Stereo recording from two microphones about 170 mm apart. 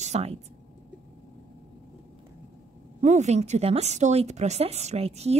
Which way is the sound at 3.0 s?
40° right (ahead or behind).